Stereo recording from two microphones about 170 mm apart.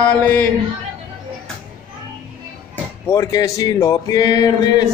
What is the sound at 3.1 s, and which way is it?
Speech, 20° left (ahead or behind).